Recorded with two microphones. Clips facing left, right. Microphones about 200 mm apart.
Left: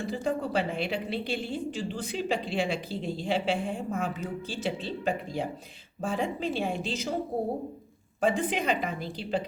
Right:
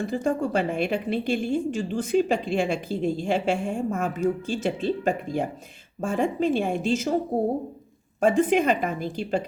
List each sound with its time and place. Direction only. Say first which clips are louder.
0.1 s a woman's voice: right 3 dB; 45° right (ahead or behind)
8.2 s a woman's voice: right 7 dB; 45° right (ahead or behind)